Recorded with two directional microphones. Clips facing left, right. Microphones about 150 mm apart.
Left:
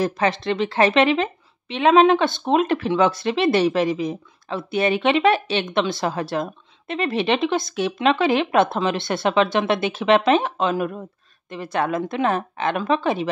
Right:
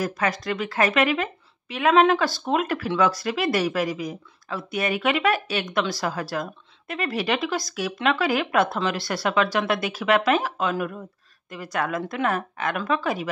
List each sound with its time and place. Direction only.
0.0 s a woman's voice: 25° left (ahead or behind)